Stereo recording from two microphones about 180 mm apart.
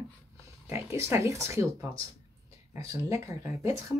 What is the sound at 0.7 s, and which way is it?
Speech, 15° right (ahead or behind).